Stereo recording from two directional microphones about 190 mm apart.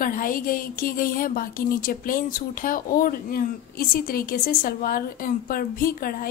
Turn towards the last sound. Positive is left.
turn(degrees=50)  # may be behind; listen again after turning